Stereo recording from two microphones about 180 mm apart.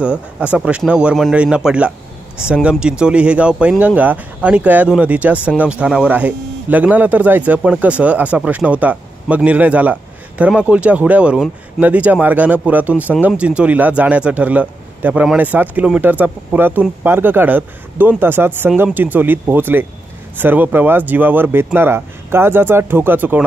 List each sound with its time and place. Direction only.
0.0 s speech: 5° right (ahead or behind)